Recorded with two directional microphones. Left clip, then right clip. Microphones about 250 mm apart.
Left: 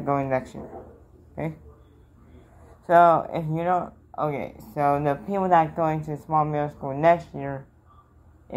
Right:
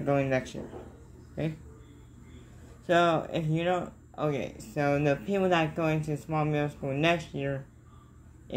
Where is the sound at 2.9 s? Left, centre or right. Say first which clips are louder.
Left 8 dB; centre.